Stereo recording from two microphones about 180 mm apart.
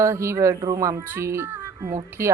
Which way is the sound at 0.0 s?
15° right (ahead or behind).